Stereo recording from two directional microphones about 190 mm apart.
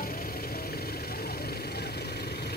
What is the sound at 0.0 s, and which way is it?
Vehicle, 50° left (ahead or behind).